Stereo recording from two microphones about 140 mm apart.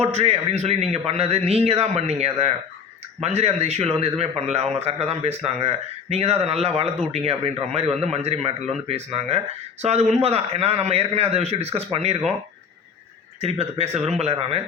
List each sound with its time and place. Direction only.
0.0 s speech: 50° right (ahead or behind)
13.4 s speech: 45° right (ahead or behind)